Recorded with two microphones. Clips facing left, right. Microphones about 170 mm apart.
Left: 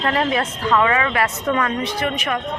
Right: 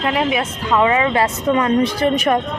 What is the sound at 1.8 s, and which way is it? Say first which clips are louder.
Speech: right 7 dB; 40° right (ahead or behind).